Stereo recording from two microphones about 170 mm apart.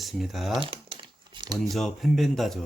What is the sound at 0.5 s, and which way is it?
Crumpling, 30° right (ahead or behind).